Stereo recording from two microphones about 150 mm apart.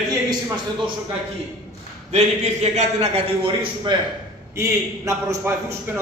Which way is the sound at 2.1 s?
50° right (ahead or behind).